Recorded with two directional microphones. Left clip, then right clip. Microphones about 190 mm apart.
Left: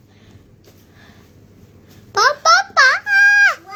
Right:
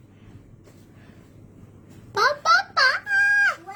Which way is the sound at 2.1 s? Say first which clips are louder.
Left 6 dB; 25° right (ahead or behind).